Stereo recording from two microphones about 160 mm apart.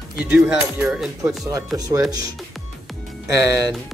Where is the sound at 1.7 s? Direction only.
20° right (ahead or behind).